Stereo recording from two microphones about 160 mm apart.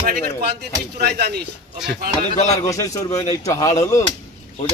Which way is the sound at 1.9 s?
70° right (ahead or behind).